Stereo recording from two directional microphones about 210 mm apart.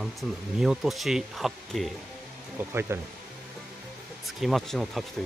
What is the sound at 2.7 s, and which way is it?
Speech, 10° right (ahead or behind).